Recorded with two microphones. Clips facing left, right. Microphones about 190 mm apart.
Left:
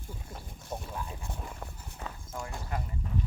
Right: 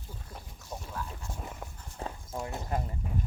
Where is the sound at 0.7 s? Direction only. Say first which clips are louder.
Left 1 dB; 15° left (ahead or behind).